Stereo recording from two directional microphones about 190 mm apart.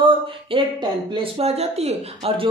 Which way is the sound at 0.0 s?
25° right (ahead or behind).